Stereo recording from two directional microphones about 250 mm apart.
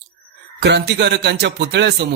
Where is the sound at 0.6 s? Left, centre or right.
Right.